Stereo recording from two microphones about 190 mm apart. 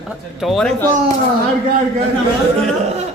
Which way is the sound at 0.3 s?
Centre (ahead or behind).